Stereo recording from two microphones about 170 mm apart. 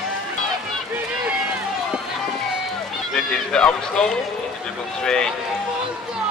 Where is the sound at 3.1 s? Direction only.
Centre (ahead or behind).